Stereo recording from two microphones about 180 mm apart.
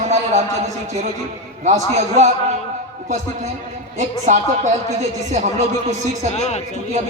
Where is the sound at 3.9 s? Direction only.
40° right (ahead or behind).